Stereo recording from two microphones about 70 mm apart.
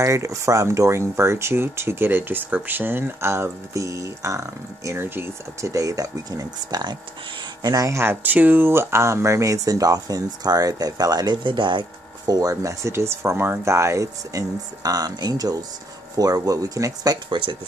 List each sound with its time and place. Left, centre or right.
0.0 s speech: right
8.0 s speech: right
12.3 s speech: right